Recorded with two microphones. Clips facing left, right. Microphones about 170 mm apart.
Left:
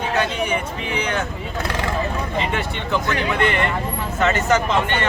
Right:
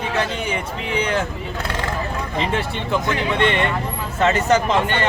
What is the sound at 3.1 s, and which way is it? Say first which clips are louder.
A man's voice: right 1 dB; 25° right (ahead or behind).